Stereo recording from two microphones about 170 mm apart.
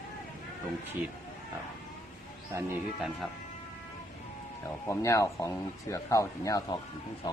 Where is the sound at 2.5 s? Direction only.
15° right (ahead or behind).